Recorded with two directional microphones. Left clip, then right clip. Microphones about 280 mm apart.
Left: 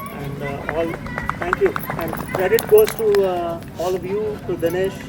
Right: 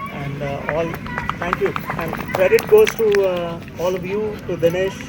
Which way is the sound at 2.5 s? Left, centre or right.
Left.